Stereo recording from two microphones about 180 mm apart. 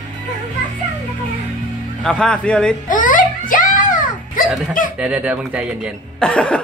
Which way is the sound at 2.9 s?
45° left (ahead or behind).